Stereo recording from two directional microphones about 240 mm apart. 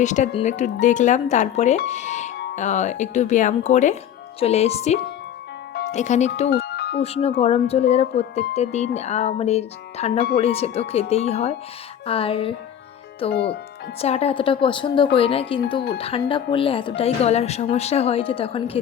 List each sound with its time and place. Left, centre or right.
0.0 s speech: left
6.7 s chime: left
7.0 s speech: left
13.3 s speech: left
14.0 s speech: left